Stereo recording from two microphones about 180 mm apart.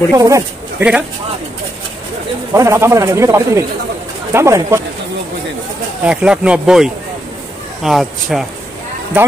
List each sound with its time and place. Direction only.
0.1 s speech: 20° right (ahead or behind)
2.5 s speech: 15° right (ahead or behind)
6.0 s speech: 5° right (ahead or behind)